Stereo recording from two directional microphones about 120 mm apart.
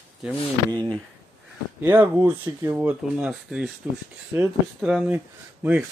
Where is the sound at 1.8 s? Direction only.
20° right (ahead or behind).